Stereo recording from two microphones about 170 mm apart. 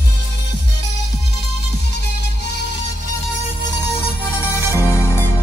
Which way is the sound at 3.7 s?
15° left (ahead or behind).